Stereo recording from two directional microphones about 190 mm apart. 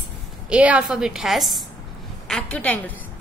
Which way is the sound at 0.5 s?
5° right (ahead or behind).